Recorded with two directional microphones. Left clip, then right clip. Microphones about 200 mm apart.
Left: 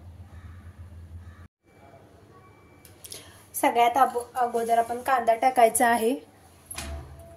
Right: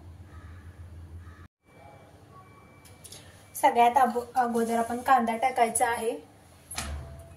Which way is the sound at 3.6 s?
55° left (ahead or behind).